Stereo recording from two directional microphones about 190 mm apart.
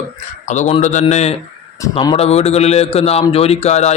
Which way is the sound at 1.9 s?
25° left (ahead or behind).